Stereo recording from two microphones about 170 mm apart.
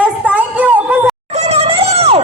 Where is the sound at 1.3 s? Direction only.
40° right (ahead or behind).